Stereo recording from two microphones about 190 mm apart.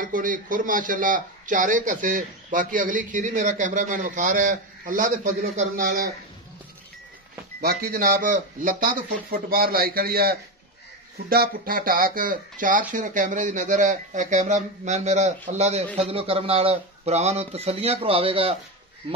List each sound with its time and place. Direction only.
0.0 s a man's voice: 45° right (ahead or behind)
7.6 s a man's voice: 50° right (ahead or behind); by 18.6 s 30° right (ahead or behind)